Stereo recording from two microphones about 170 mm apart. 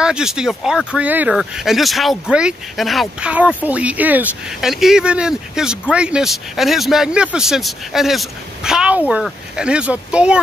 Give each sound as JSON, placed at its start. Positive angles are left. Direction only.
{"t": 0.0, "sound": "speech", "side_deg": -5}